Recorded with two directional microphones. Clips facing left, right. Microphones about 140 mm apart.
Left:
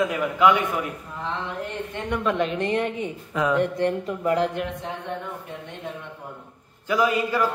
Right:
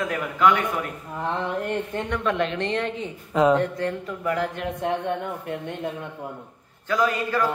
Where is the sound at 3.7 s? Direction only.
20° left (ahead or behind).